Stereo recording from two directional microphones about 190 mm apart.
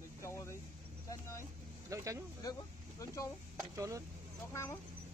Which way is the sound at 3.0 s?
15° left (ahead or behind).